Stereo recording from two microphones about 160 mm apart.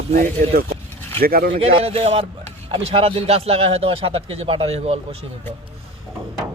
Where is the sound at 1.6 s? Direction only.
40° right (ahead or behind).